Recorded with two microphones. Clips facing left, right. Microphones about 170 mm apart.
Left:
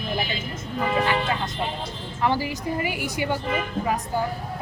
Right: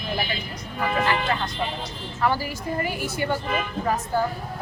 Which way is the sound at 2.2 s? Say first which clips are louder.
Even; 15° left (ahead or behind).